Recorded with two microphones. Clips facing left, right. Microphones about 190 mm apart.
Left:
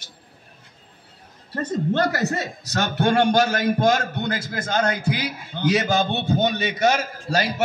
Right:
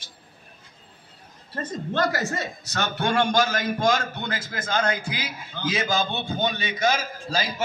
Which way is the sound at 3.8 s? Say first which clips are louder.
Left 3 dB; 40° left (ahead or behind).